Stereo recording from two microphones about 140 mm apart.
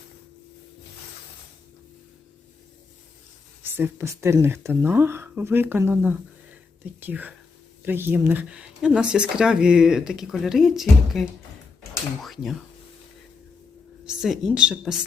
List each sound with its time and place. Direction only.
3.6 s speech: 15° right (ahead or behind); by 12.5 s centre (ahead or behind)
14.2 s speech: 5° right (ahead or behind)